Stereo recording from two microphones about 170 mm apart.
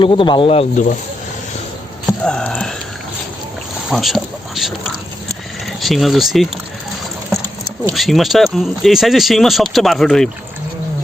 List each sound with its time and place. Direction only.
0.0 s speech: 30° left (ahead or behind)
2.2 s a sound: 5° left (ahead or behind)
3.9 s speech: centre (ahead or behind)
5.8 s speech: centre (ahead or behind)
7.9 s speech: centre (ahead or behind)